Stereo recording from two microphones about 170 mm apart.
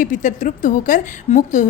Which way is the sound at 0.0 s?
50° left (ahead or behind).